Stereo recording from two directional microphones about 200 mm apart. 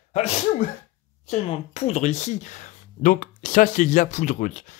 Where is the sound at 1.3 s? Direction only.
30° left (ahead or behind).